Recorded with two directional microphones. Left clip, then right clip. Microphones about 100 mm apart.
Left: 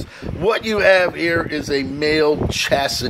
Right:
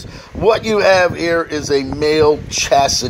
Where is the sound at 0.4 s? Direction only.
35° right (ahead or behind).